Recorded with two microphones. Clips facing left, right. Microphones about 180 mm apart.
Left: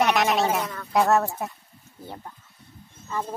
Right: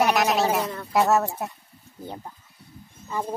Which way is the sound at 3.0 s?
15° right (ahead or behind).